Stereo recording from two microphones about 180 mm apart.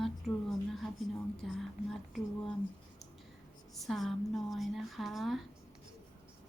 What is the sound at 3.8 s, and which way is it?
A woman's voice, centre (ahead or behind).